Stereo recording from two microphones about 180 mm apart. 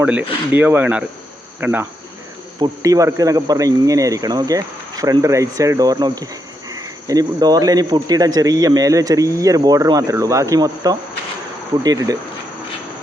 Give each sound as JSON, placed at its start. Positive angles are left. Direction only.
{"t": 0.0, "sound": "a man's voice", "side_deg": -10}